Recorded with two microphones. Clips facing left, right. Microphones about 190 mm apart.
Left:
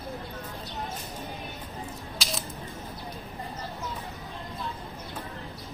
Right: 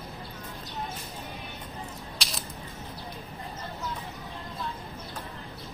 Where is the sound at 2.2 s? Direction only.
Centre (ahead or behind).